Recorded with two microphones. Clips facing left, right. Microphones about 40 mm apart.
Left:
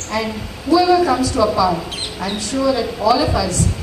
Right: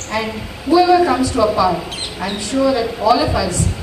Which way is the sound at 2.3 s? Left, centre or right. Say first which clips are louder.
Right 2 dB; right.